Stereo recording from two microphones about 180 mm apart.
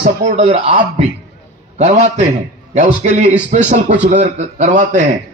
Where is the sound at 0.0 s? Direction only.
40° right (ahead or behind).